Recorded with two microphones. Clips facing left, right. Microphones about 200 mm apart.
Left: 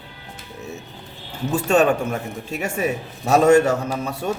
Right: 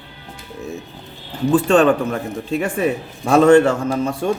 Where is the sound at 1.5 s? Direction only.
10° left (ahead or behind).